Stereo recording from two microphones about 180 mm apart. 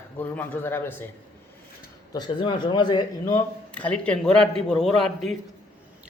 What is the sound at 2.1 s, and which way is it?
A man's voice, 25° left (ahead or behind).